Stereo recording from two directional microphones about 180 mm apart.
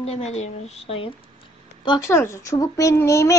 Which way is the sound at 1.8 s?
20° left (ahead or behind).